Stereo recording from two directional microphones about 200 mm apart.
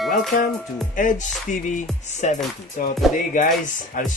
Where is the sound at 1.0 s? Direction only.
40° left (ahead or behind).